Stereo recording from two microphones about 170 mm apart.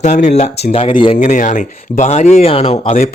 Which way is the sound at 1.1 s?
45° left (ahead or behind).